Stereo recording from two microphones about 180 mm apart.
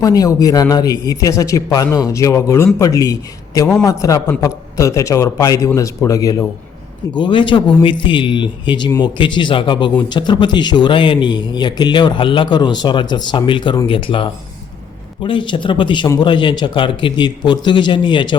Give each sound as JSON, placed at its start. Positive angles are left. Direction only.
{"t": 0.0, "sound": "a man's voice", "side_deg": 20}